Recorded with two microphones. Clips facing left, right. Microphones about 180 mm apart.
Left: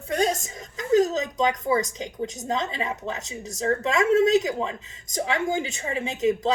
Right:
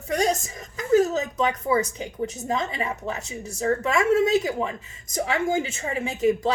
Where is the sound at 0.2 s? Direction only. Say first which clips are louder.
Even; 20° left (ahead or behind).